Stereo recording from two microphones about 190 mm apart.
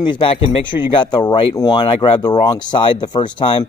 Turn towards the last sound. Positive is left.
turn(degrees=25)  # may be behind; listen again after turning